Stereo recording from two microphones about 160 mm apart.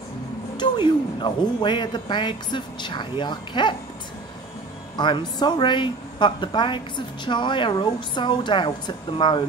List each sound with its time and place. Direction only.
0.6 s a woman's voice: 30° left (ahead or behind)
4.9 s a woman's voice: 30° left (ahead or behind)